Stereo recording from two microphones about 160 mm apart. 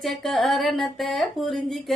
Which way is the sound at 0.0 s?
Centre (ahead or behind).